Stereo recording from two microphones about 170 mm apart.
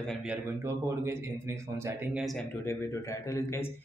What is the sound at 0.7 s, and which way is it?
Speech, 15° right (ahead or behind).